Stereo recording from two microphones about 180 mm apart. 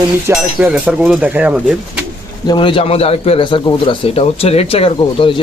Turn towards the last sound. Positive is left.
turn(degrees=30)  # may be behind; listen again after turning